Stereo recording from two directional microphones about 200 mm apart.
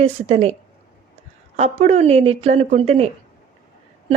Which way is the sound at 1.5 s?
35° right (ahead or behind).